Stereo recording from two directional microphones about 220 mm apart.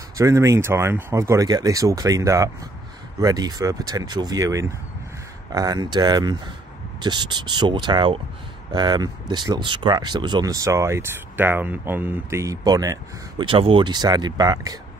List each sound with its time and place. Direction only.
0.2 s speech: 15° right (ahead or behind)